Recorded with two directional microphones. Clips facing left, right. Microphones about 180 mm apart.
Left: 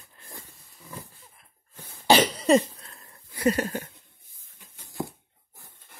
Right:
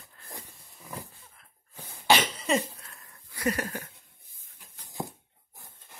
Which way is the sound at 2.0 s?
35° left (ahead or behind).